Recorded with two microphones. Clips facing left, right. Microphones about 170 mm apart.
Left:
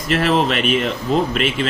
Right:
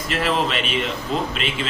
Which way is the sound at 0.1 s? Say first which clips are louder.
Left 5 dB; 45° left (ahead or behind).